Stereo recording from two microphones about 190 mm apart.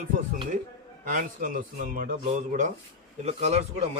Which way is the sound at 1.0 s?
40° right (ahead or behind).